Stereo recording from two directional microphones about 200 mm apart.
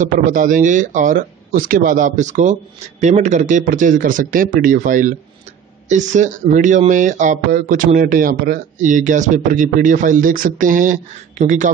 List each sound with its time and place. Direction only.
0.0 s speech: 40° right (ahead or behind)